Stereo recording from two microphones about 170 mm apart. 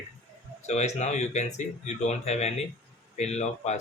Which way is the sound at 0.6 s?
40° left (ahead or behind).